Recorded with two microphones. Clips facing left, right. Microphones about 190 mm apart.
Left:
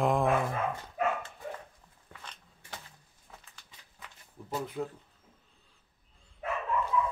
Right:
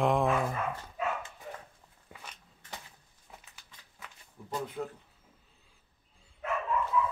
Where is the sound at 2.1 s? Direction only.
10° right (ahead or behind).